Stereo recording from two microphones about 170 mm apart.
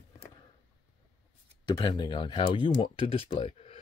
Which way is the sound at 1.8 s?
25° left (ahead or behind).